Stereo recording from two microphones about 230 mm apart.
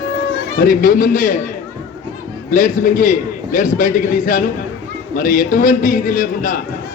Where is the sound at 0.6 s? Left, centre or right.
Left.